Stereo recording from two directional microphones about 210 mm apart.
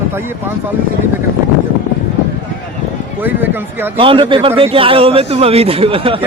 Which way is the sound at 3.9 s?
25° right (ahead or behind).